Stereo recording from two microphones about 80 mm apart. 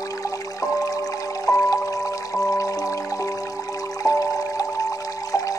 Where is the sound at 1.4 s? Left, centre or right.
Left.